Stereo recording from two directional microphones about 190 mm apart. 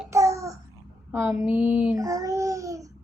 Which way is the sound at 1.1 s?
5° right (ahead or behind).